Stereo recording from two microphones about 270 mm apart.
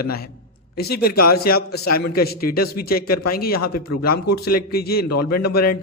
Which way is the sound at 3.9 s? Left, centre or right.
Left.